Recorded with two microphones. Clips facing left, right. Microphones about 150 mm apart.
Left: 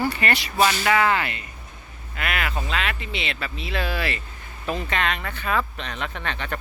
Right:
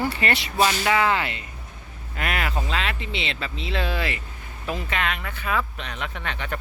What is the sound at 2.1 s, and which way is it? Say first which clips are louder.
Speech: right 1 dB; 35° right (ahead or behind).